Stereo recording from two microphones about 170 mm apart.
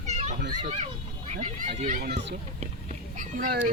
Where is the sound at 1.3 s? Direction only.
45° right (ahead or behind); by 2.4 s 85° right.